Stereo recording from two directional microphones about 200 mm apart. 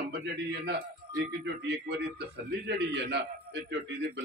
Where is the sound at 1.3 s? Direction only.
55° right (ahead or behind).